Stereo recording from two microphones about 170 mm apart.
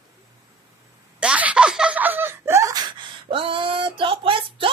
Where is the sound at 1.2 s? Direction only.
5° right (ahead or behind).